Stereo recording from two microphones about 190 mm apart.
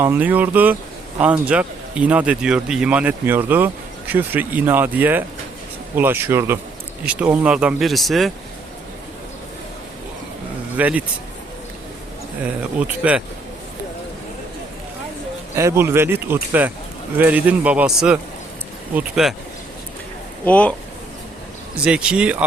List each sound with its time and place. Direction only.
0.0 s speech: 10° right (ahead or behind)
10.8 s speech: 10° right (ahead or behind)
12.4 s speech: 5° right (ahead or behind)
15.5 s speech: 15° right (ahead or behind)
20.4 s speech: 5° left (ahead or behind)
21.8 s speech: 5° right (ahead or behind)